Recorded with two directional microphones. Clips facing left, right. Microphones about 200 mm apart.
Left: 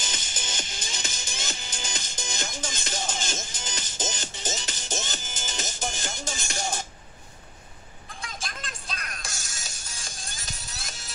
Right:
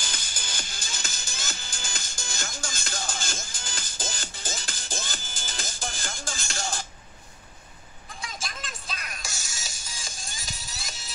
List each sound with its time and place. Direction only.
0.0 s music: 20° left (ahead or behind)
8.4 s music: centre (ahead or behind)
9.4 s music: 55° left (ahead or behind)
9.9 s music: centre (ahead or behind)